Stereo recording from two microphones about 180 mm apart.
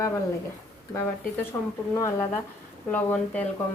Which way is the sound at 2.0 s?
15° left (ahead or behind).